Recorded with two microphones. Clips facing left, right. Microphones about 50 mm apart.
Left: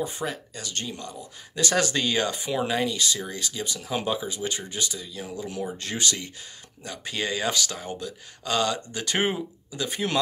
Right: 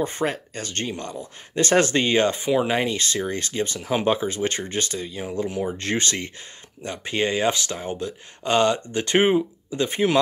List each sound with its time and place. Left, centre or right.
0.0 s speech: right
3.8 s speech: right
4.1 s speech: right